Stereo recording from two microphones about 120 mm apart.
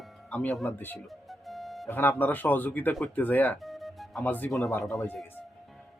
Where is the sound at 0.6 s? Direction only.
15° left (ahead or behind).